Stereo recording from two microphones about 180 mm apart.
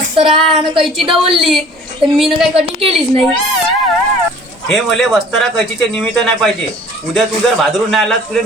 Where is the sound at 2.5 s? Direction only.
35° right (ahead or behind).